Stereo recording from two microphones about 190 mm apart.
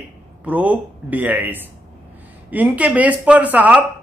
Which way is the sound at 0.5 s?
10° right (ahead or behind).